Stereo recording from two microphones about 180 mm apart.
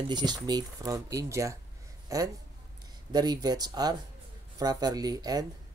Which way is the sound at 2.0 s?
20° right (ahead or behind).